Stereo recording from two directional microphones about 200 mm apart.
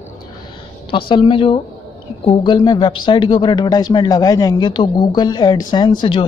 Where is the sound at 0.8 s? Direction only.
25° left (ahead or behind).